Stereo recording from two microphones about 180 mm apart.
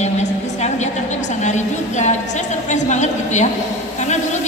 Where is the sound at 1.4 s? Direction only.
40° left (ahead or behind).